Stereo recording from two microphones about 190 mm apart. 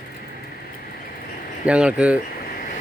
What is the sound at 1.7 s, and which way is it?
Speech, 5° right (ahead or behind).